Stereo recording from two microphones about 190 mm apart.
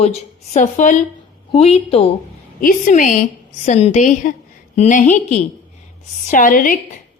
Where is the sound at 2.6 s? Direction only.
45° left (ahead or behind).